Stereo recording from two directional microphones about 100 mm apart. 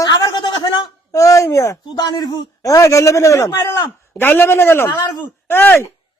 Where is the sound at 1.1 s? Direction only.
30° left (ahead or behind).